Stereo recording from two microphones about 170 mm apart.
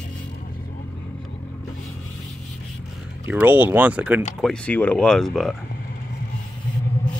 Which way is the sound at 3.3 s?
10° right (ahead or behind).